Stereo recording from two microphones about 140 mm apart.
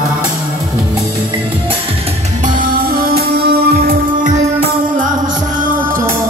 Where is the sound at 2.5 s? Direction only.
90° right.